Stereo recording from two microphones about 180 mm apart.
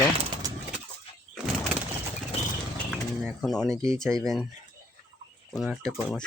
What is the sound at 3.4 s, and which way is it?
Speech, 5° left (ahead or behind).